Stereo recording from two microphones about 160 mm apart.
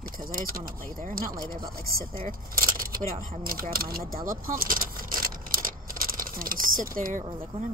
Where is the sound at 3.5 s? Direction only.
65° right (ahead or behind).